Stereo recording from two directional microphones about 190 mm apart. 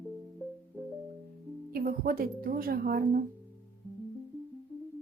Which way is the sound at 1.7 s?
50° right (ahead or behind).